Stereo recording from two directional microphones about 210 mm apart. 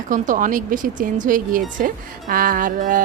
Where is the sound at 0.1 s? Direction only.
40° right (ahead or behind).